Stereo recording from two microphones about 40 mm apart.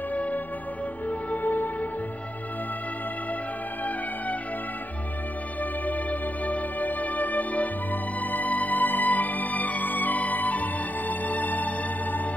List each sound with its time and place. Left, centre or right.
0.1 s music: left
5.6 s music: left